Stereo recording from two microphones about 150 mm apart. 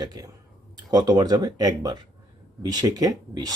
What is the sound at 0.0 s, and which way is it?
Speech, 25° right (ahead or behind).